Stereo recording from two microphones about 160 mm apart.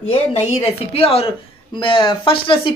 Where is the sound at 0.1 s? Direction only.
40° left (ahead or behind).